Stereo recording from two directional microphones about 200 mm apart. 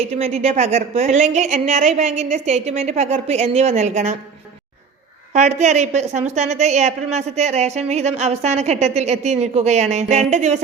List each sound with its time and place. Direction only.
0.1 s a woman's voice: 30° right (ahead or behind)
5.3 s a woman's voice: 35° right (ahead or behind)